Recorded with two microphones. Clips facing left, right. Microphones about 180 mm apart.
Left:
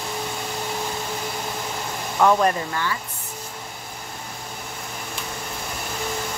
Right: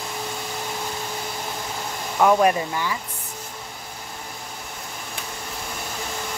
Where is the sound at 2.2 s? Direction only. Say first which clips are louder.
Right 1 dB; 10° right (ahead or behind).